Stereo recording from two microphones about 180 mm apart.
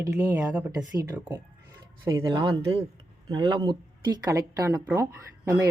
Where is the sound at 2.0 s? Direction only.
20° right (ahead or behind).